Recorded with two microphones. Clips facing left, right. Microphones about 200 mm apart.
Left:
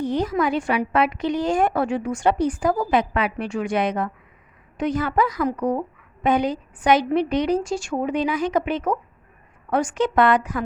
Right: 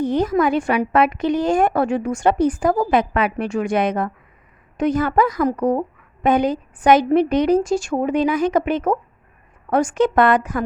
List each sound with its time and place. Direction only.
0.0 s a woman's voice: 50° right (ahead or behind)